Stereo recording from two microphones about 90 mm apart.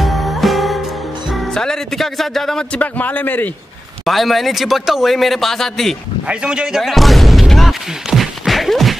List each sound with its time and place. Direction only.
0.0 s music: centre (ahead or behind)
1.3 s speech: 5° left (ahead or behind)
2.8 s a man's voice: 20° left (ahead or behind)
4.0 s speech: centre (ahead or behind)
6.2 s a sound: 10° right (ahead or behind)